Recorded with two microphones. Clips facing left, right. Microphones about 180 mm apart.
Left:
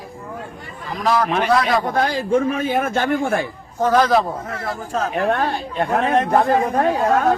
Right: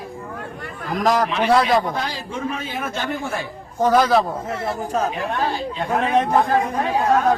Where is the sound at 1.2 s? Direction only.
50° left (ahead or behind).